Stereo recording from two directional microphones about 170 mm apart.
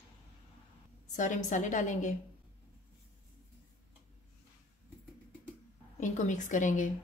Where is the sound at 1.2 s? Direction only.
45° left (ahead or behind).